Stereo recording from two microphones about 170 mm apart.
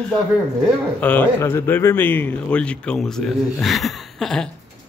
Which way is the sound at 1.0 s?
10° left (ahead or behind).